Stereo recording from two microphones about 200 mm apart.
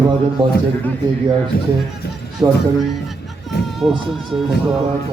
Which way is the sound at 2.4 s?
15° right (ahead or behind).